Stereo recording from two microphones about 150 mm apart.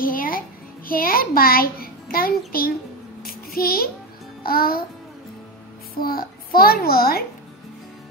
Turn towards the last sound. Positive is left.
turn(degrees=90)